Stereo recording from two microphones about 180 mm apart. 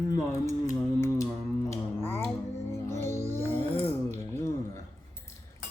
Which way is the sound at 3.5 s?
10° left (ahead or behind).